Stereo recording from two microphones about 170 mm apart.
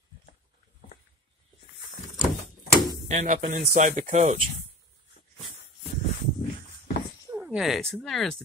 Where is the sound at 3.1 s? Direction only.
40° right (ahead or behind).